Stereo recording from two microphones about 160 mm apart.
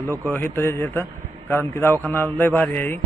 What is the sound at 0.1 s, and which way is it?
A man's voice, 10° left (ahead or behind).